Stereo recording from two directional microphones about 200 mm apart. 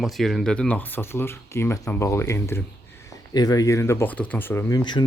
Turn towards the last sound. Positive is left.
turn(degrees=20)  # may be behind; listen again after turning